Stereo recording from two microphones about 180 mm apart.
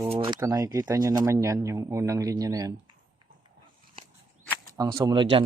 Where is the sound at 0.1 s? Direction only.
30° right (ahead or behind).